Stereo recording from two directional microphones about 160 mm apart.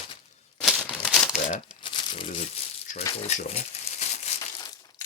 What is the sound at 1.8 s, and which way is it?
Crumpling, 30° left (ahead or behind).